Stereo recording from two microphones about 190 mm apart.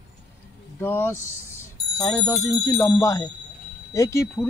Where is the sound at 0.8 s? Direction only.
10° left (ahead or behind).